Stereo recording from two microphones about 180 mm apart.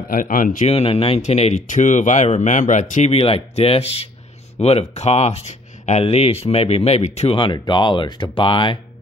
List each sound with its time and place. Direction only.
0.1 s speech: 50° left (ahead or behind); by 8.7 s 30° left (ahead or behind)